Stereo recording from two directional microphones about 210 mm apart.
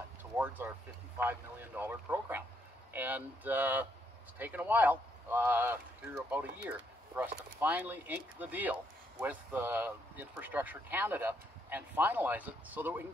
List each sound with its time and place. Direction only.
1.1 s speech: 10° right (ahead or behind)